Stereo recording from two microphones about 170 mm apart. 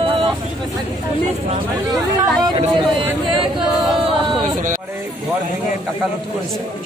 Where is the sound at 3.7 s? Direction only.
Centre (ahead or behind).